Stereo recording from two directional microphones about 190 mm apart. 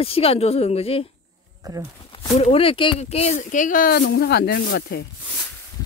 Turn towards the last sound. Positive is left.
turn(degrees=60)  # may be behind; listen again after turning